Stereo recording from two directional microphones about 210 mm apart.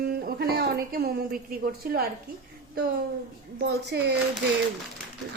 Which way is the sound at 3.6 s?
50° right (ahead or behind).